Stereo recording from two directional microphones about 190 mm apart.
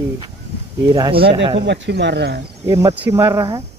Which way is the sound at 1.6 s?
65° right (ahead or behind).